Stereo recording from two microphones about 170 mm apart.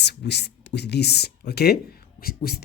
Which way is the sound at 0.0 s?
80° left.